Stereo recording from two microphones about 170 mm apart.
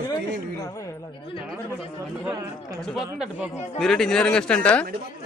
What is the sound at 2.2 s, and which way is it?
Speech, 20° right (ahead or behind).